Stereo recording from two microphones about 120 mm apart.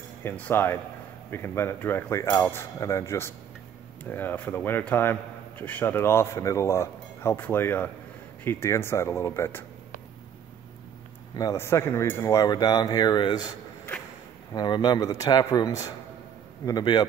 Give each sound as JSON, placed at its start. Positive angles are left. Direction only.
{"t": 0.2, "sound": "speech", "side_deg": 15}
{"t": 11.5, "sound": "speech", "side_deg": 20}
{"t": 14.5, "sound": "speech", "side_deg": 35}